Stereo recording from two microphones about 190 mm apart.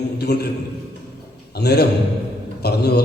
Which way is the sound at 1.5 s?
60° left (ahead or behind).